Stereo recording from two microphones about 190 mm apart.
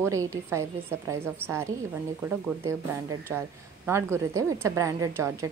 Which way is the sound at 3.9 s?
15° right (ahead or behind).